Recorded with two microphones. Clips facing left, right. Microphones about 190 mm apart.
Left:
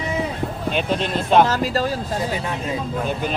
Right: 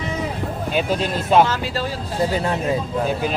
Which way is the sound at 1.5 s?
40° left (ahead or behind).